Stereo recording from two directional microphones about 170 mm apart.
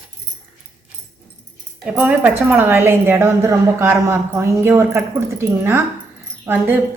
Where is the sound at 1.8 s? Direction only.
10° right (ahead or behind).